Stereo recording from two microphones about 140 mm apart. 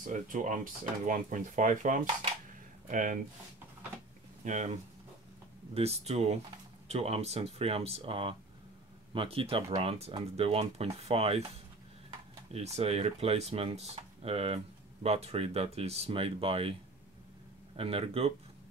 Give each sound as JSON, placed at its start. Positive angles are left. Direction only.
{"t": 0.0, "sound": "speech", "side_deg": -65}
{"t": 4.5, "sound": "speech", "side_deg": -55}
{"t": 5.8, "sound": "speech", "side_deg": -50}
{"t": 12.5, "sound": "speech", "side_deg": -50}
{"t": 17.7, "sound": "speech", "side_deg": -45}